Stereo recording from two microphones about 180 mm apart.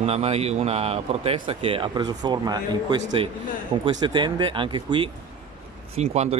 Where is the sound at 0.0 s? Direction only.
35° right (ahead or behind).